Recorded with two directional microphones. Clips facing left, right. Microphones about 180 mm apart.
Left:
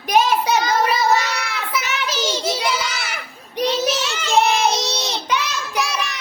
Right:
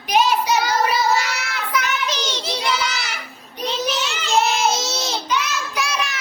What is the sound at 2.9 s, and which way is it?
Child singing, 55° left (ahead or behind).